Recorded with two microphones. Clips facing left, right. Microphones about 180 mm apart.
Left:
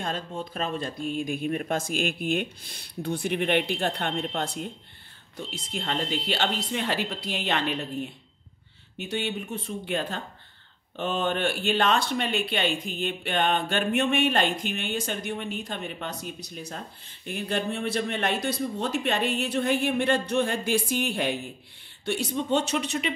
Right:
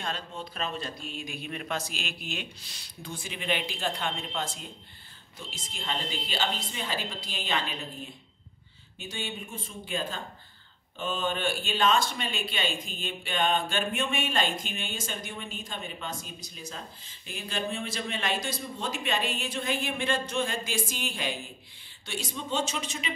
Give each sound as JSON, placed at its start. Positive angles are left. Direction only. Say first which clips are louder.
{"t": 0.0, "sound": "speech", "louder": "left 4 dB", "side_deg": 50}